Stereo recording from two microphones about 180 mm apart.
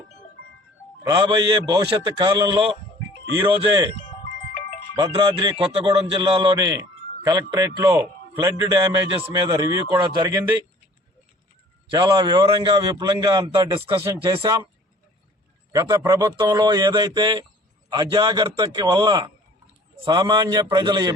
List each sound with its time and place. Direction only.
1.0 s a man's voice: 25° right (ahead or behind)
4.9 s a man's voice: 25° right (ahead or behind)
11.9 s a man's voice: 25° right (ahead or behind)
14.0 s a man's voice: 15° right (ahead or behind)
15.7 s a man's voice: 20° right (ahead or behind)